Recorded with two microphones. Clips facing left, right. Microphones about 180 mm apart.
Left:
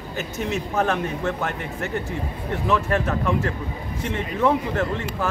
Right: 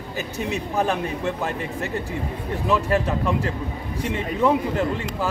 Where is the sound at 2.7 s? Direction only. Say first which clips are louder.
Right 1 dB; 15° right (ahead or behind).